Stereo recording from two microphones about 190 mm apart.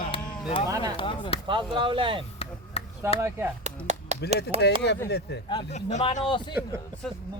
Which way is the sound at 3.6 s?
35° right (ahead or behind).